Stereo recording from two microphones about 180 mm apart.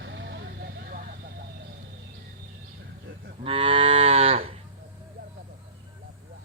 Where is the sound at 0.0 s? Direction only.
85° right; by 1.5 s 50° right (ahead or behind).